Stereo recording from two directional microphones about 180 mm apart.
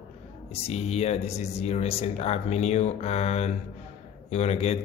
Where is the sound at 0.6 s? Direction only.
35° left (ahead or behind).